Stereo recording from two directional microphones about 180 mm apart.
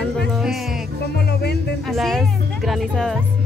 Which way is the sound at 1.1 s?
65° left (ahead or behind).